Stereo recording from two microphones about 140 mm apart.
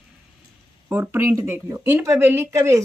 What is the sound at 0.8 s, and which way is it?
Speech, 15° right (ahead or behind).